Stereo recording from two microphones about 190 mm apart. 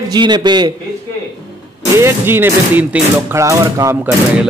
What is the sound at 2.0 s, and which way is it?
Speech, 15° right (ahead or behind).